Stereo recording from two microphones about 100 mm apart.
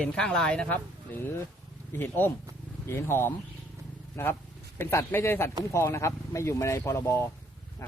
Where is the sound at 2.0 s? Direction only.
20° left (ahead or behind).